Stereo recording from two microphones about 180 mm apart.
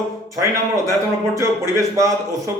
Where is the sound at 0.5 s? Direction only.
15° right (ahead or behind).